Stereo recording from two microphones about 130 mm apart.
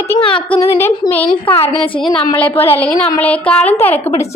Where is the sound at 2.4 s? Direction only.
15° left (ahead or behind).